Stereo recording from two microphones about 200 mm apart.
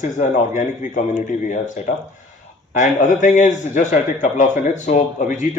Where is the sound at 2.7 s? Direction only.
40° left (ahead or behind).